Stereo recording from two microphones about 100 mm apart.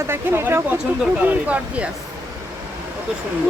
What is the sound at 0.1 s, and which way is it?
Speech, 20° right (ahead or behind).